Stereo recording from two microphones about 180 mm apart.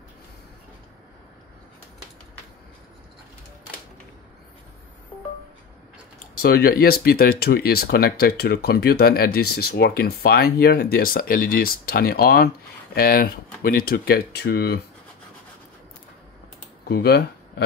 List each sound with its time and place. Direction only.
6.4 s speech: 60° left (ahead or behind)
16.8 s speech: 65° left (ahead or behind)